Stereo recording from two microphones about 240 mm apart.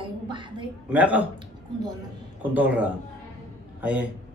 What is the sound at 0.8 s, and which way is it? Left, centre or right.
Speech, centre.